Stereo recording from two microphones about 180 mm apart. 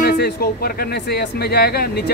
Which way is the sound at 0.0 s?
55° left (ahead or behind).